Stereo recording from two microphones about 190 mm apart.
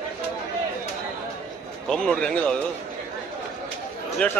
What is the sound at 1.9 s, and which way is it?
Speech, 5° left (ahead or behind).